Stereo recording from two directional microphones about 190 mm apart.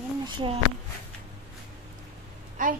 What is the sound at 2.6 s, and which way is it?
Speech, 45° right (ahead or behind).